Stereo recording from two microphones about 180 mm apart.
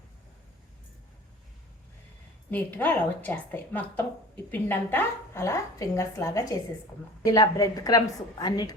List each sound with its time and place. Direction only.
2.5 s a woman's voice: 10° left (ahead or behind)